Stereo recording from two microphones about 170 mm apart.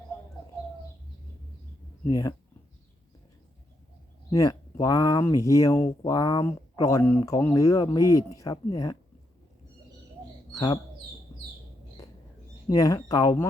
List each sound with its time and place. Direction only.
2.0 s speech: 20° left (ahead or behind)
4.3 s speech: 20° left (ahead or behind)
10.5 s speech: 20° left (ahead or behind)
12.6 s speech: 20° left (ahead or behind)